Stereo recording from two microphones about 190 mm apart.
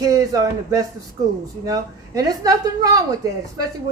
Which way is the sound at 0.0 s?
20° right (ahead or behind).